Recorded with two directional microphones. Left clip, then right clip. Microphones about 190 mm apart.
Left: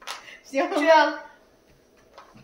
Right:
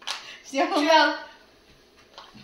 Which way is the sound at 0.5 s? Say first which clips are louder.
Left 1 dB; 10° left (ahead or behind).